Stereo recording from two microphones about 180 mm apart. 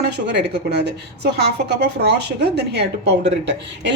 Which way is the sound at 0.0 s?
65° right (ahead or behind).